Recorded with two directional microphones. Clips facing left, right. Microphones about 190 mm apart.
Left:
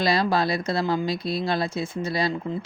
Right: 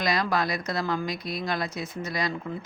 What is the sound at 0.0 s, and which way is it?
Speech, 30° left (ahead or behind).